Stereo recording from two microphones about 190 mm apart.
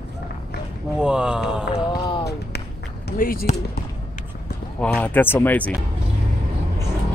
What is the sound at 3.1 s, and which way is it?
Speech, 50° left (ahead or behind).